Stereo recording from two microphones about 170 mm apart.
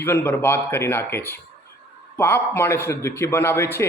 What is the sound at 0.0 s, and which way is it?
Speech, 15° left (ahead or behind).